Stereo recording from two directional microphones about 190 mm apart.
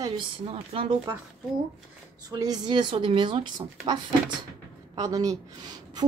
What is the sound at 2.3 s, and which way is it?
A woman's voice, 20° right (ahead or behind).